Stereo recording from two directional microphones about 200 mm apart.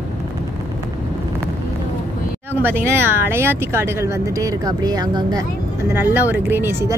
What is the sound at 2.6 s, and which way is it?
Speech, 10° right (ahead or behind).